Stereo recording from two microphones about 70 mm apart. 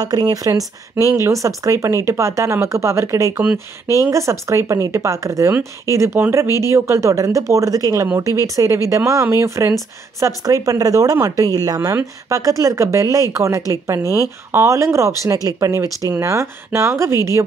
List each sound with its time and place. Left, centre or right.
0.0 s speech: right
3.5 s speech: left
4.0 s speech: right
10.2 s speech: right
12.0 s speech: right
14.5 s speech: right
15.3 s speech: right
16.1 s speech: right